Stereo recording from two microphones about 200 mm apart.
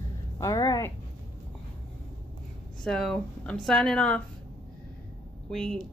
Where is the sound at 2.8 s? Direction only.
Centre (ahead or behind).